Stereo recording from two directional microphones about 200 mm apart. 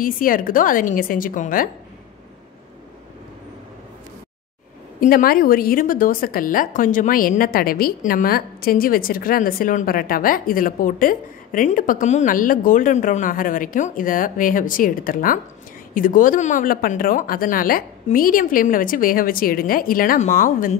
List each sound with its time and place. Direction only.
0.0 s a woman's voice: 45° left (ahead or behind)
5.0 s a woman's voice: 45° left (ahead or behind)